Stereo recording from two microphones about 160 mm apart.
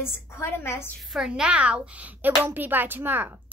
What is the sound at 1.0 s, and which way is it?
A woman's voice, 5° right (ahead or behind).